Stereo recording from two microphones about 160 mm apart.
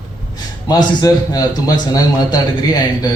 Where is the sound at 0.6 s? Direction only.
25° left (ahead or behind).